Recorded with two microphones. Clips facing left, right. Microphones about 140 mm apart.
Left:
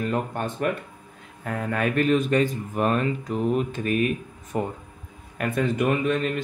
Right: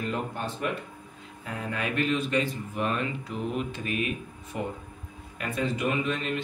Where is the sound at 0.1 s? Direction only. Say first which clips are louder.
Left 5 dB; 50° left (ahead or behind).